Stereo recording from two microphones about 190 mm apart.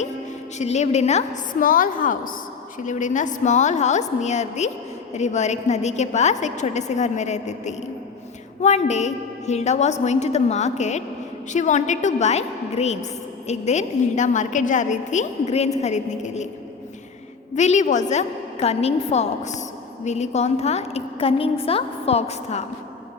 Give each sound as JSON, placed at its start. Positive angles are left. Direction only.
{"t": 0.6, "sound": "a woman's voice", "side_deg": 35}
{"t": 17.5, "sound": "a woman's voice", "side_deg": 40}